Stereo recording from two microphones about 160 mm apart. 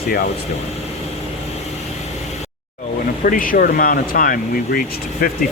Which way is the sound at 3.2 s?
60° left (ahead or behind).